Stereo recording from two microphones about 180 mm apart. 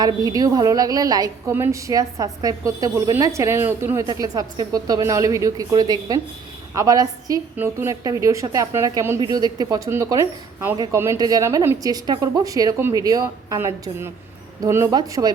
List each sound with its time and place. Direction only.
0.0 s speech: 20° right (ahead or behind)